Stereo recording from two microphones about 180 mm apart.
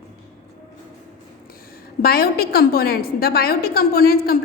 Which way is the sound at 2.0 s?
55° left (ahead or behind).